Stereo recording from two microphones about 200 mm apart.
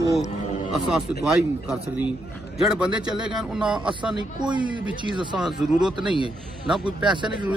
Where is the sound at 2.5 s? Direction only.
5° right (ahead or behind).